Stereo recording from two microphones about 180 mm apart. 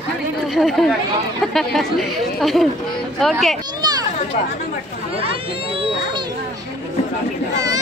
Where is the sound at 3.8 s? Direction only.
20° right (ahead or behind).